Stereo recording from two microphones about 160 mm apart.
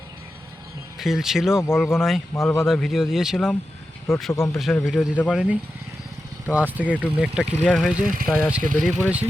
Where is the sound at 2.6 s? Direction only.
Centre (ahead or behind).